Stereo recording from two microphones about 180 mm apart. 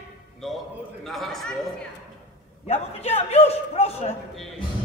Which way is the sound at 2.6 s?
35° left (ahead or behind).